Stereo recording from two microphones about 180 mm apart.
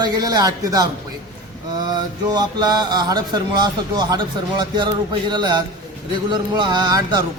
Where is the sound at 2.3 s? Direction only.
20° right (ahead or behind).